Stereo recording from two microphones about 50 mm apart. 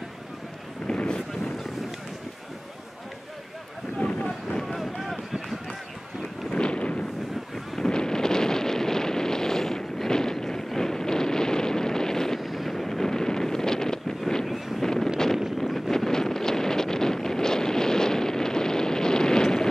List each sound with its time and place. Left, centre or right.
0.8 s wind noise: centre
4.6 s run: centre
6.5 s a sound: centre
7.7 s wind noise: centre
12.4 s wind noise: centre